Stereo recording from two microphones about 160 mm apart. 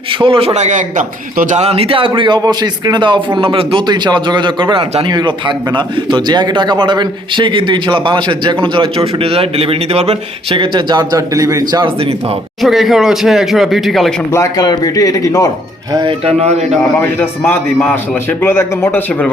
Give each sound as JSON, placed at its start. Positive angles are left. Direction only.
{"t": 0.2, "sound": "a man's voice", "side_deg": -35}
{"t": 12.6, "sound": "speech", "side_deg": 0}
{"t": 14.3, "sound": "speech", "side_deg": 20}
{"t": 16.0, "sound": "speech", "side_deg": -35}
{"t": 17.0, "sound": "a man's voice", "side_deg": 15}